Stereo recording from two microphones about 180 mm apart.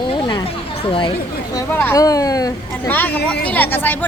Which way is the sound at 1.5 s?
10° left (ahead or behind).